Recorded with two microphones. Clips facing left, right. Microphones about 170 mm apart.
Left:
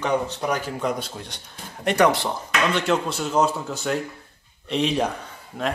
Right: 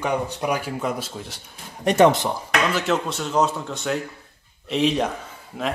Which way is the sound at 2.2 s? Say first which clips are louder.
Right 1 dB; 5° right (ahead or behind).